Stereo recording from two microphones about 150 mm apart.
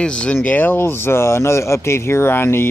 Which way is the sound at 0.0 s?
5° left (ahead or behind).